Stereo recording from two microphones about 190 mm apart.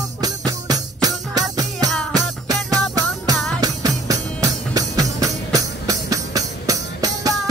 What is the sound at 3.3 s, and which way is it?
Music, 5° left (ahead or behind).